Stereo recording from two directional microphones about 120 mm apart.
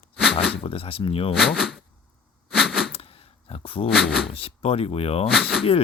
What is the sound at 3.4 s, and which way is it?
Dog, 50° left (ahead or behind).